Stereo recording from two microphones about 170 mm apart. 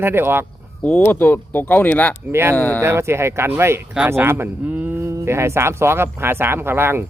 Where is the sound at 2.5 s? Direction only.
10° left (ahead or behind).